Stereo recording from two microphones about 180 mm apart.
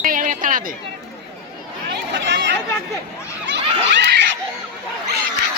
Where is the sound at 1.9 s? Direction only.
75° right (ahead or behind).